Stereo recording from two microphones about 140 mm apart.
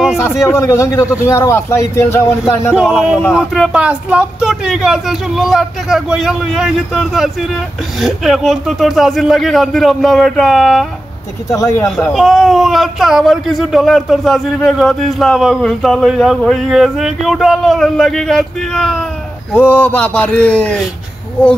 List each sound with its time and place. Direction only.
0.4 s speech: 20° left (ahead or behind)
2.7 s speech: 5° right (ahead or behind)
11.5 s speech: 20° left (ahead or behind)
12.0 s speech: centre (ahead or behind)
19.5 s speech: 10° left (ahead or behind)